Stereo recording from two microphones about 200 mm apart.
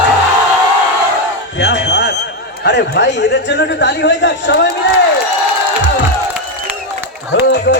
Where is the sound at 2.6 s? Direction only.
60° left (ahead or behind).